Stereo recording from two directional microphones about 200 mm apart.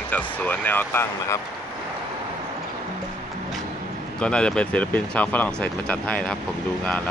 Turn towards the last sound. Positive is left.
turn(degrees=5)  # may be behind; listen again after turning